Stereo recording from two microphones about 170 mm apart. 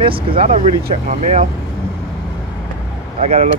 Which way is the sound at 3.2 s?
40° right (ahead or behind).